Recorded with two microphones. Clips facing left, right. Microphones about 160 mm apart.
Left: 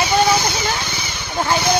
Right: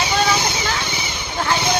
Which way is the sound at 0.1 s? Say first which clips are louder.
Left 4 dB; 15° left (ahead or behind).